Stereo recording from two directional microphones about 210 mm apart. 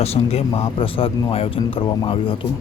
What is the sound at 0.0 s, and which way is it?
Speech, 30° left (ahead or behind).